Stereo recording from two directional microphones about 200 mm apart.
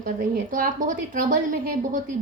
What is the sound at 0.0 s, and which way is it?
Speech, 45° right (ahead or behind).